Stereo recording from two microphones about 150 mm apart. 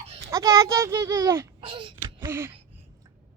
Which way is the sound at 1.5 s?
30° right (ahead or behind).